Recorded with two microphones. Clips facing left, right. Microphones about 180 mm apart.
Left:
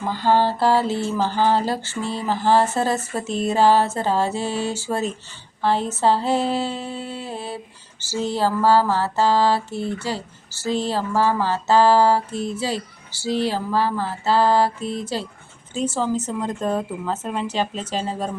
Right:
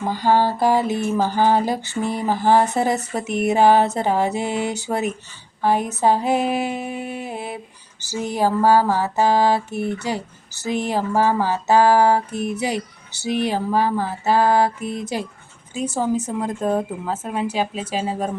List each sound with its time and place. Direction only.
0.1 s speech: 15° right (ahead or behind)